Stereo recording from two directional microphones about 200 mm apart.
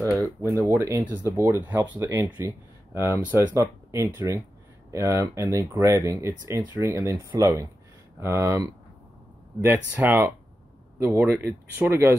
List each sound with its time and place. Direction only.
0.4 s speech: 10° right (ahead or behind)
9.7 s speech: 10° right (ahead or behind)